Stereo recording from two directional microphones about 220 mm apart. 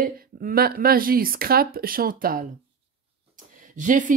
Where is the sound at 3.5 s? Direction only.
35° right (ahead or behind).